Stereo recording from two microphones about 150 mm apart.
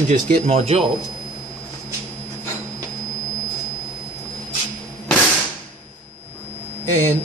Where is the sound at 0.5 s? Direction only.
45° right (ahead or behind).